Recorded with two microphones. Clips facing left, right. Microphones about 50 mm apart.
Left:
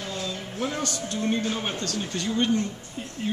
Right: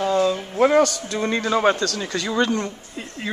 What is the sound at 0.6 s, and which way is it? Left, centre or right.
A man's voice, right.